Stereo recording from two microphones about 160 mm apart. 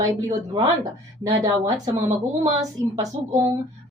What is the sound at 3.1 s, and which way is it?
Speech, 45° right (ahead or behind).